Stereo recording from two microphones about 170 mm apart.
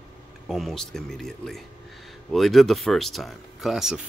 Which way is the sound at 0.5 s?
Centre (ahead or behind).